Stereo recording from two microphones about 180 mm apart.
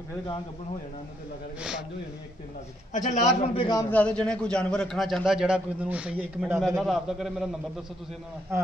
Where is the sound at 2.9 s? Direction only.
45° left (ahead or behind).